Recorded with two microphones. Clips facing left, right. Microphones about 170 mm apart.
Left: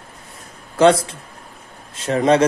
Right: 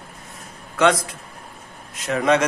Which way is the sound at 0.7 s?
30° left (ahead or behind).